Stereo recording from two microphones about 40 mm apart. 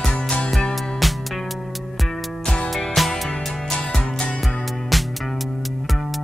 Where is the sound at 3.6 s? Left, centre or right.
Centre.